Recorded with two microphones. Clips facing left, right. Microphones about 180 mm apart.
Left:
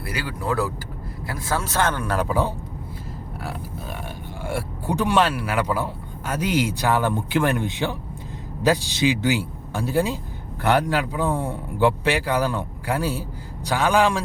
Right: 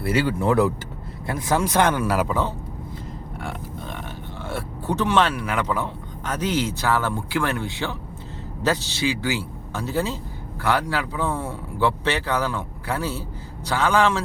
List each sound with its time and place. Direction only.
0.0 s speech: 25° right (ahead or behind); by 2.2 s 10° right (ahead or behind)
2.2 s a man's voice: 10° left (ahead or behind)
4.4 s a man's voice: 10° left (ahead or behind)